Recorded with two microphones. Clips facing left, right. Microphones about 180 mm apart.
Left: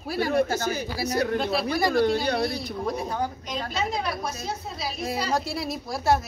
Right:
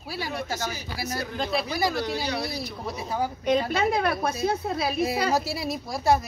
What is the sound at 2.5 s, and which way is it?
Speech, 5° right (ahead or behind).